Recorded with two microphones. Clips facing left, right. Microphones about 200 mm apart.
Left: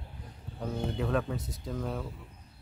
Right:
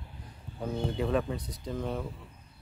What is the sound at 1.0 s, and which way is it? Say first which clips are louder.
Speech: right 1 dB; centre (ahead or behind).